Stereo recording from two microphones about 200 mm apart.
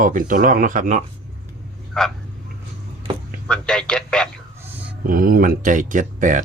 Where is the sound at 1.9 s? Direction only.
5° left (ahead or behind).